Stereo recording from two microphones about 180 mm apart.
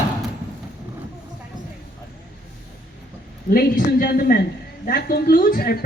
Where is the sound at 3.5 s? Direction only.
50° left (ahead or behind).